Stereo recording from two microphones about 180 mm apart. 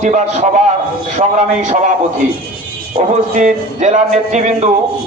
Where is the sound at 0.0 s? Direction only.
40° right (ahead or behind).